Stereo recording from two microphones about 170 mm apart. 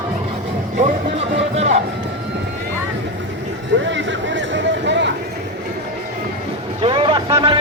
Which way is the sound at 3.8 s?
90° right.